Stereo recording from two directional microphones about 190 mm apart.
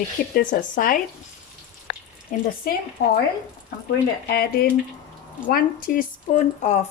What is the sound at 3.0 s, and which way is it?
Speech, 55° left (ahead or behind).